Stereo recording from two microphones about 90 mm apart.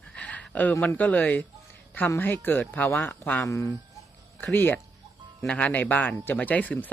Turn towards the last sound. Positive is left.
turn(degrees=20)  # may be behind; listen again after turning